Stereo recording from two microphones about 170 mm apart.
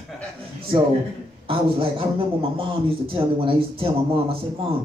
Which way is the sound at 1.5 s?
30° right (ahead or behind).